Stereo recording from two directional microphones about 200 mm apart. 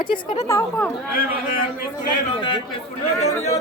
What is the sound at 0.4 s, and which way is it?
Speech, 15° left (ahead or behind).